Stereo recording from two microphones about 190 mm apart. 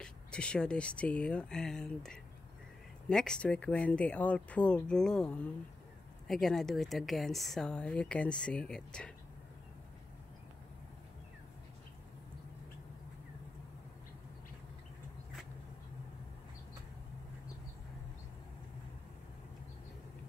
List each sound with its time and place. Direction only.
0.0 s speech: 5° left (ahead or behind)